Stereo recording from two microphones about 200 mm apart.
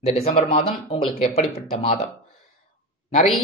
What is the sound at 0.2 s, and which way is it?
Speech, 35° left (ahead or behind).